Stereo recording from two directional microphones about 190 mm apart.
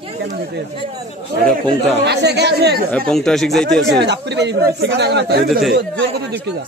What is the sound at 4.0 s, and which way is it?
Speech, 65° right (ahead or behind).